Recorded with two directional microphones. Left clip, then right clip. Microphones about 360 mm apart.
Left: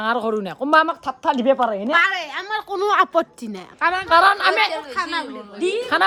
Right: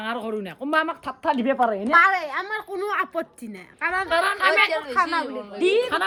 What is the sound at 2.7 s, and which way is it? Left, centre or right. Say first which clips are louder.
A woman's voice: left 9 dB; centre.